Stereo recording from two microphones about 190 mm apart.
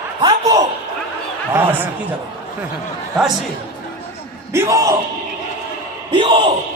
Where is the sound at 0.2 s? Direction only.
25° right (ahead or behind).